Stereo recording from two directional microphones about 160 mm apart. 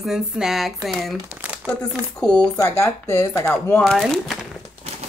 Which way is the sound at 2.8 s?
15° left (ahead or behind).